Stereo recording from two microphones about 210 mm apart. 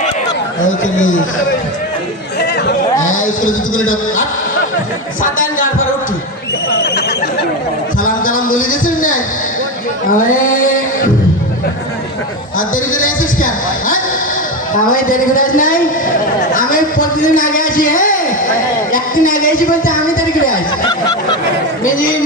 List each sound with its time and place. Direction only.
3.1 s a man's voice: 40° left (ahead or behind)
5.2 s a woman's voice: 40° left (ahead or behind)
8.0 s a sound: 40° left (ahead or behind)
10.1 s music: 40° left (ahead or behind)
12.5 s a woman's voice: 40° left (ahead or behind)